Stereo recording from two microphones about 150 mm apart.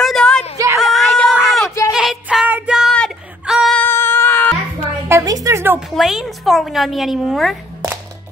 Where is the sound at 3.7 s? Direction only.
15° left (ahead or behind).